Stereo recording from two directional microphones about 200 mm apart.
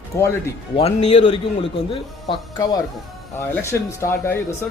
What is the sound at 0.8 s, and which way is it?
Speech, 30° left (ahead or behind).